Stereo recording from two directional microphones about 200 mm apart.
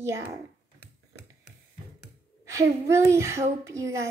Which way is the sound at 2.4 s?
15° right (ahead or behind).